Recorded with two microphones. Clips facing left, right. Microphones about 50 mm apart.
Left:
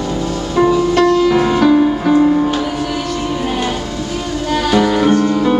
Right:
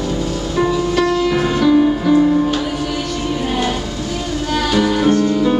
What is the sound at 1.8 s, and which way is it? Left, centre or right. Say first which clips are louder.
Music: left 1 dB; centre.